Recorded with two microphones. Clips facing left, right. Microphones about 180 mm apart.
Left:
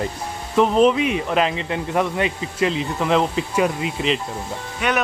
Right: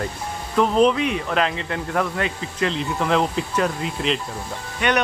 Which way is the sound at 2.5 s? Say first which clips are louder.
Left 1 dB; 5° left (ahead or behind).